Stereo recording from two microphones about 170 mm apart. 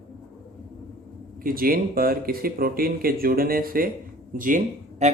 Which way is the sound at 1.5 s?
60° right (ahead or behind).